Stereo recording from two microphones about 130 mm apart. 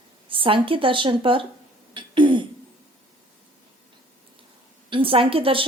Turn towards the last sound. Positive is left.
turn(degrees=-45)  # may be behind; listen again after turning